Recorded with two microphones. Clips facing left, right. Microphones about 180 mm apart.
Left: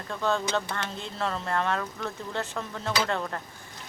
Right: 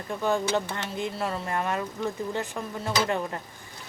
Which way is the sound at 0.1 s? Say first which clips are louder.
Right 2 dB; 15° right (ahead or behind).